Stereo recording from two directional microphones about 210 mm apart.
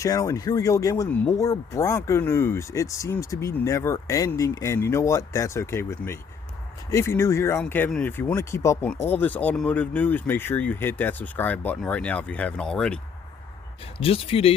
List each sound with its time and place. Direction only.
0.0 s speech: 15° left (ahead or behind)
14.0 s speech: 25° left (ahead or behind)